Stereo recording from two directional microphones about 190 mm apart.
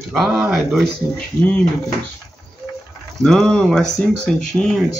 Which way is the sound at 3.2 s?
5° left (ahead or behind).